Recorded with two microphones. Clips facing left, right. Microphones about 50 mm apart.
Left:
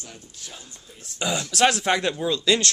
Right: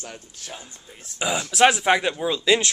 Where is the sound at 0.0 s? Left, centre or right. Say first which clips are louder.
Right 4 dB; right.